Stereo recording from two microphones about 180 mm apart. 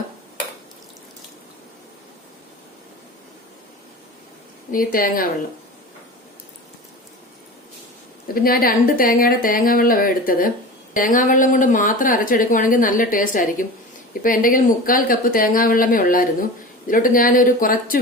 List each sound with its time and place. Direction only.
4.7 s speech: 50° left (ahead or behind)
8.3 s speech: 55° left (ahead or behind)